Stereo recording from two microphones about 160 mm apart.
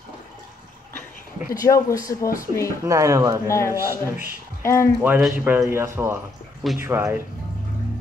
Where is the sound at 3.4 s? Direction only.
20° left (ahead or behind).